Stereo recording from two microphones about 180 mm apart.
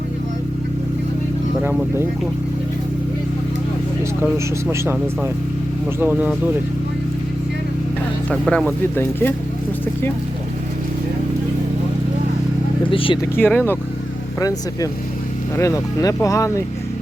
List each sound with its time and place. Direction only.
4.2 s speech: 15° right (ahead or behind)
8.3 s speech: 5° left (ahead or behind)
12.8 s speech: 30° left (ahead or behind)
13.3 s speech: 10° left (ahead or behind)